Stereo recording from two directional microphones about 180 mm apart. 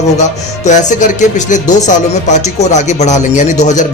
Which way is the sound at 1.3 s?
45° left (ahead or behind).